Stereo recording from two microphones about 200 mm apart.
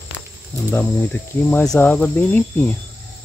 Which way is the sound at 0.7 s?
10° left (ahead or behind).